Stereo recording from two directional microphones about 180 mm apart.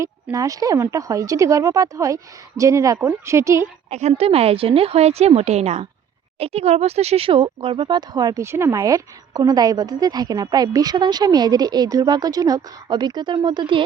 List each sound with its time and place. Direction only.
0.0 s speech: 20° right (ahead or behind)
3.8 s a woman's voice: 35° right (ahead or behind)